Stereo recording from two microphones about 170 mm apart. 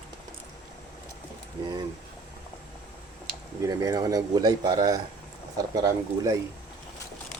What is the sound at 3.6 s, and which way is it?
Speech, 20° right (ahead or behind).